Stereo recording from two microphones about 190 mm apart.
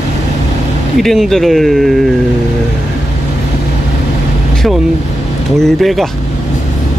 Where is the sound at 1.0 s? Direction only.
Centre (ahead or behind).